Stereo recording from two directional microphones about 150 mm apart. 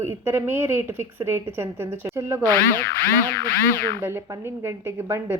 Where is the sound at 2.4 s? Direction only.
10° left (ahead or behind).